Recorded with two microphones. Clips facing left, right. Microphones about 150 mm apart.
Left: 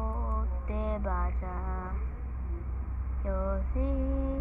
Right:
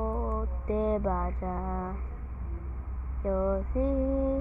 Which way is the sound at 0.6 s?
35° right (ahead or behind).